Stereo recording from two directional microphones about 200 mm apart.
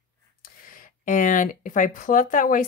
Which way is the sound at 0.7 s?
40° left (ahead or behind).